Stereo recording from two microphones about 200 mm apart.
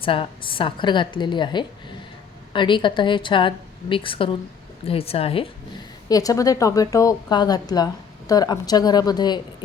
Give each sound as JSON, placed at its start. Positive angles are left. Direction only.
{"t": 0.0, "sound": "a woman's voice", "side_deg": 25}
{"t": 6.1, "sound": "a woman's voice", "side_deg": 20}